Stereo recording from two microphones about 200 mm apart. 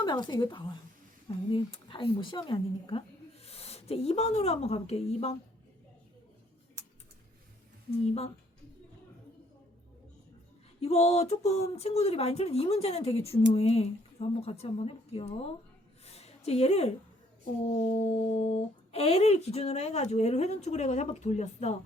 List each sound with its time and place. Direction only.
0.0 s a woman's voice: 20° left (ahead or behind)
8.0 s speech: 30° left (ahead or behind)
10.8 s speech: 30° left (ahead or behind)
16.0 s a sound: 30° left (ahead or behind)
17.7 s speech: 35° left (ahead or behind)